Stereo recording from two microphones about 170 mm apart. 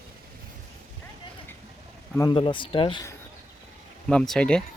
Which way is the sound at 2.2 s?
30° left (ahead or behind).